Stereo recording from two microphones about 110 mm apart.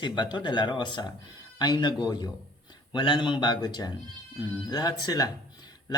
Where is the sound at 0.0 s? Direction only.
45° left (ahead or behind).